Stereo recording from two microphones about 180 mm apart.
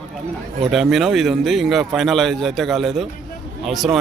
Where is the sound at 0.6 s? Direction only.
Centre (ahead or behind).